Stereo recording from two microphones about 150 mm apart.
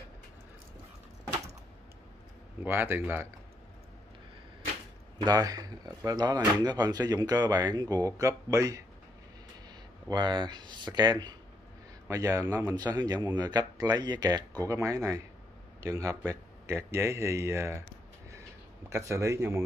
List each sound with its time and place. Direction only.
2.6 s speech: 15° right (ahead or behind)
5.2 s speech: 25° right (ahead or behind)
10.0 s speech: 30° right (ahead or behind)
18.9 s speech: 20° right (ahead or behind)